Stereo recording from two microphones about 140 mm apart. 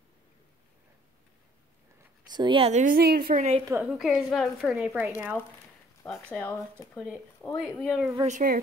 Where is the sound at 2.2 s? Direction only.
30° right (ahead or behind).